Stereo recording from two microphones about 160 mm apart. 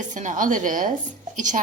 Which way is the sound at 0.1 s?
55° right (ahead or behind).